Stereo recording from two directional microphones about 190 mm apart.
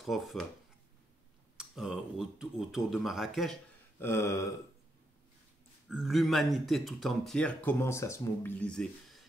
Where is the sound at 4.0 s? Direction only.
15° left (ahead or behind).